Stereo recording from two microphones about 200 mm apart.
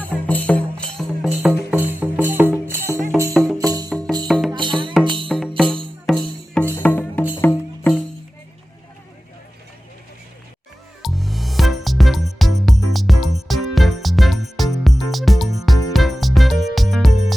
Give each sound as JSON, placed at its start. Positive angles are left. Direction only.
{"t": 0.0, "sound": "music", "side_deg": 5}
{"t": 3.3, "sound": "music", "side_deg": 0}
{"t": 3.6, "sound": "music", "side_deg": -20}
{"t": 3.8, "sound": "music", "side_deg": 5}
{"t": 4.5, "sound": "music", "side_deg": -25}
{"t": 5.3, "sound": "music", "side_deg": 0}
{"t": 11.0, "sound": "music", "side_deg": 0}